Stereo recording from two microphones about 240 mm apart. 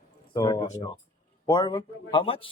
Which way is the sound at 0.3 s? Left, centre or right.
Centre.